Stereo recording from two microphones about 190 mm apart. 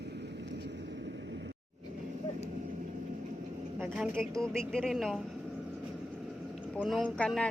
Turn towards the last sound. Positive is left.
turn(degrees=5)  # may be behind; listen again after turning